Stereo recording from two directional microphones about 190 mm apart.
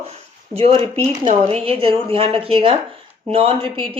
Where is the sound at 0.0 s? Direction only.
30° right (ahead or behind).